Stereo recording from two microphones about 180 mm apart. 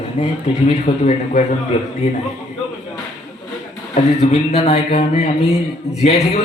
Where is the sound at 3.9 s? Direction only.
35° left (ahead or behind).